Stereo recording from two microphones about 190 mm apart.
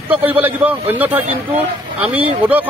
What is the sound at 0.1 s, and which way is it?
Speech, 10° right (ahead or behind).